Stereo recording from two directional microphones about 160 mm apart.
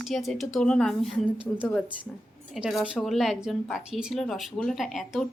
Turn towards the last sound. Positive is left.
turn(degrees=0)  # may be behind; listen again after turning